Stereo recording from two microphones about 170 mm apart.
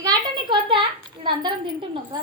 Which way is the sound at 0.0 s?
25° right (ahead or behind).